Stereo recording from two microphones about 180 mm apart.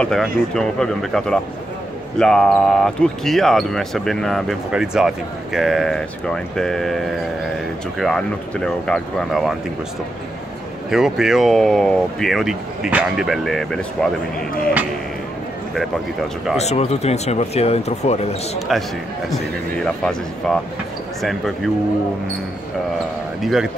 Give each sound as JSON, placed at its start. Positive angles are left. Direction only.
{"t": 0.0, "sound": "speech", "side_deg": 5}
{"t": 10.9, "sound": "speech", "side_deg": -5}
{"t": 16.5, "sound": "speech", "side_deg": 35}
{"t": 18.7, "sound": "speech", "side_deg": 0}
{"t": 23.4, "sound": "speech", "side_deg": 0}